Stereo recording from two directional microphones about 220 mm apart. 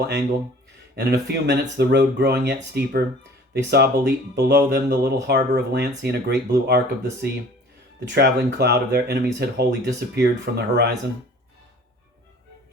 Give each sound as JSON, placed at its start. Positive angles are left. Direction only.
{"t": 0.9, "sound": "speech", "side_deg": -50}